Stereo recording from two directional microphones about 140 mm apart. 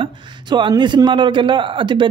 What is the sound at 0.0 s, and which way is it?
Speech, 35° right (ahead or behind).